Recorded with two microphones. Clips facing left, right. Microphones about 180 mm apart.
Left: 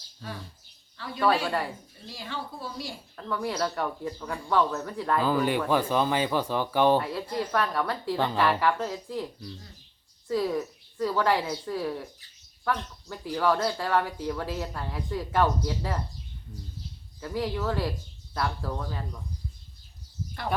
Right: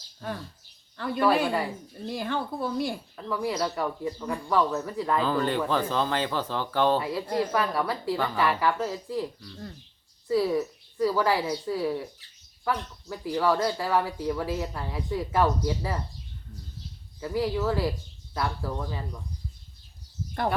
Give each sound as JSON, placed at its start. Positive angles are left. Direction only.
{"t": 0.9, "sound": "speech", "side_deg": -55}
{"t": 3.2, "sound": "speech", "side_deg": -5}
{"t": 7.0, "sound": "speech", "side_deg": 0}
{"t": 10.2, "sound": "speech", "side_deg": -5}
{"t": 17.2, "sound": "speech", "side_deg": -5}